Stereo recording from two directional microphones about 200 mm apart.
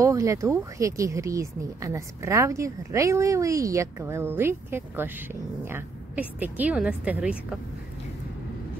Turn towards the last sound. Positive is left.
turn(degrees=-5)  # may be behind; listen again after turning